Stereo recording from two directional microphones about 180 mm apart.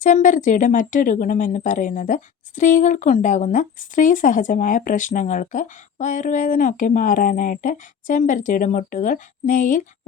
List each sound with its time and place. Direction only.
0.0 s speech: 45° left (ahead or behind)